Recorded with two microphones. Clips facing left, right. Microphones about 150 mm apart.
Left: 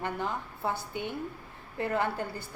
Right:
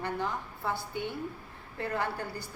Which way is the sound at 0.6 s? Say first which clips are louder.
Left 1 dB; 20° left (ahead or behind).